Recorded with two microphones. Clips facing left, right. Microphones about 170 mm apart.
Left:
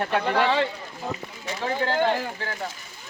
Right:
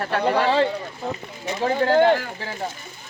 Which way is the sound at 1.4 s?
20° right (ahead or behind).